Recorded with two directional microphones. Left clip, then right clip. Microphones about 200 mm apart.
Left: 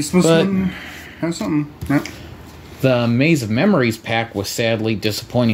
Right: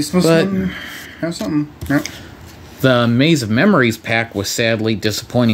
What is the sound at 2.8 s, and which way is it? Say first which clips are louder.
Speech: right 3 dB; 25° right (ahead or behind).